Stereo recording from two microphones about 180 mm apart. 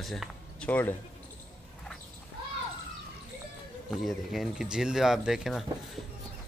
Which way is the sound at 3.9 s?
Centre (ahead or behind).